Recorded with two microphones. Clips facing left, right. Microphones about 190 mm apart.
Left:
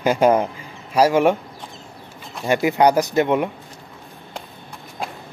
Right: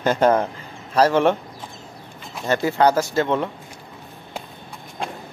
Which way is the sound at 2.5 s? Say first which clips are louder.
Left 2 dB; 15° left (ahead or behind).